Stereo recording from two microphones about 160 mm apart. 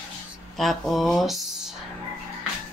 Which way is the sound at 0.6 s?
Centre (ahead or behind).